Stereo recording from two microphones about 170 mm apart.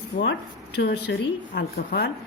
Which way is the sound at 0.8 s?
85° left.